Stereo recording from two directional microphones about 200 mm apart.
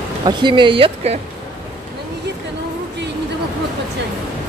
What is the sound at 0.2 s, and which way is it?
Speech, 25° right (ahead or behind).